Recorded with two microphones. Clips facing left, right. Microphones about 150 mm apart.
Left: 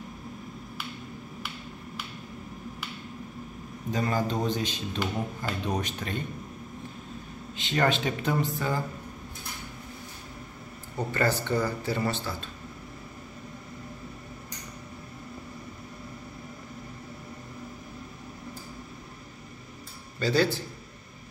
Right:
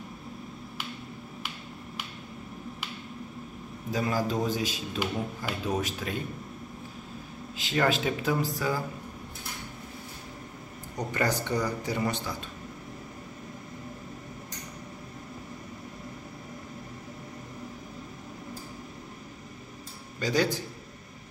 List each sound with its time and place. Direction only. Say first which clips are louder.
3.9 s a man's voice: even; 5° right (ahead or behind)
7.5 s a man's voice: even; centre (ahead or behind)
11.1 s speech: left 2 dB; 15° right (ahead or behind)
20.2 s speech: left 2 dB; 15° right (ahead or behind)